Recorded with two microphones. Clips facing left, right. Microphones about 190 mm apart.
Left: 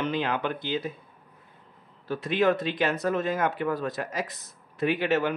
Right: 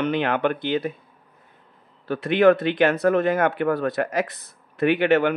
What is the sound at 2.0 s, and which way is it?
Speech, 65° right (ahead or behind).